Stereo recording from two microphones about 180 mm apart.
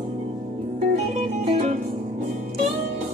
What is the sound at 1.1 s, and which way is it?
Music, 40° right (ahead or behind).